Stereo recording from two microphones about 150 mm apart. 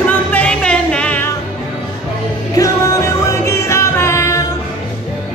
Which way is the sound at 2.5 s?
20° left (ahead or behind).